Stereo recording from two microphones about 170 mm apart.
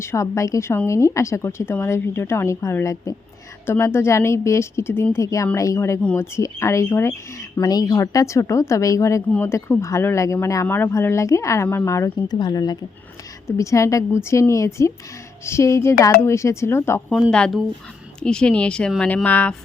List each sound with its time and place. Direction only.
0.0 s a woman's voice: 15° left (ahead or behind)
17.1 s speech: centre (ahead or behind)